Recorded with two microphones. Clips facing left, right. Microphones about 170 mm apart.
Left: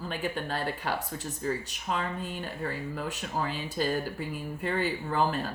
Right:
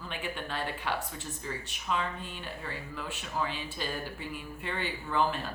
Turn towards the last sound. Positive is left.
turn(degrees=40)  # may be behind; listen again after turning